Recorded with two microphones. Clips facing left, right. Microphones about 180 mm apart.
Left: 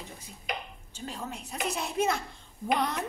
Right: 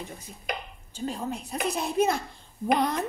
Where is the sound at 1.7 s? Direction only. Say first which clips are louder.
Right 4 dB; 35° right (ahead or behind).